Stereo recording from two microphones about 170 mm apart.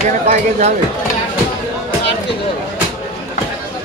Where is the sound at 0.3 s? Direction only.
40° right (ahead or behind).